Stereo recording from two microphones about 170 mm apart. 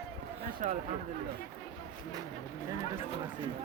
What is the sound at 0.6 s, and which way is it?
Speech, 50° right (ahead or behind).